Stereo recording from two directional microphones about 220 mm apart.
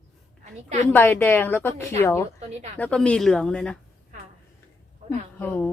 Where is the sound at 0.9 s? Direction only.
10° left (ahead or behind).